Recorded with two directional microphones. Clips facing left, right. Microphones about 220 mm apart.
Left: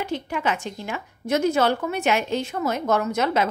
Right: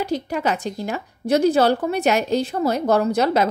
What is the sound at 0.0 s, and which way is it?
A woman's voice, 40° right (ahead or behind).